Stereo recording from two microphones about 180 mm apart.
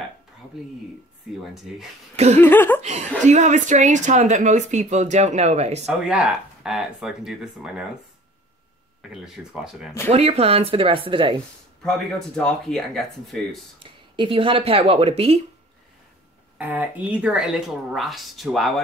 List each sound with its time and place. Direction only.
1.4 s speech: centre (ahead or behind)
2.1 s a woman's voice: 35° right (ahead or behind)
2.4 s laughter: 10° left (ahead or behind)
2.8 s a woman's voice: 40° right (ahead or behind)
6.0 s speech: 5° right (ahead or behind)
9.1 s speech: 5° right (ahead or behind)
10.0 s a woman's voice: 35° right (ahead or behind)
11.8 s speech: centre (ahead or behind)
13.8 s a woman's voice: 30° right (ahead or behind)
16.5 s speech: 10° right (ahead or behind)